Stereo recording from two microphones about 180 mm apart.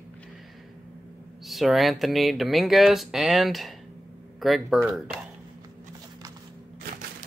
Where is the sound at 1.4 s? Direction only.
Centre (ahead or behind).